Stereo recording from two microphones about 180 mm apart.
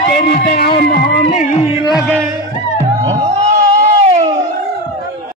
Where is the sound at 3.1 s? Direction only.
40° right (ahead or behind).